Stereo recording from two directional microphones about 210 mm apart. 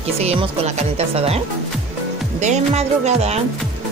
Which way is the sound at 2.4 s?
30° right (ahead or behind).